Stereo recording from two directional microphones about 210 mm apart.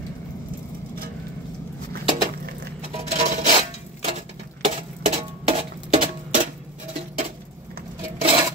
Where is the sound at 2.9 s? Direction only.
30° right (ahead or behind).